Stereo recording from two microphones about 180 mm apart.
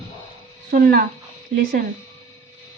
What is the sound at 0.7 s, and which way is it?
Speech, 50° right (ahead or behind).